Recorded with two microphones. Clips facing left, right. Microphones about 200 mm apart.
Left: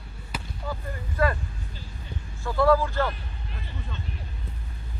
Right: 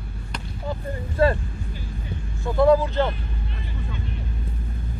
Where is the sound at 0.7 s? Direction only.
30° right (ahead or behind).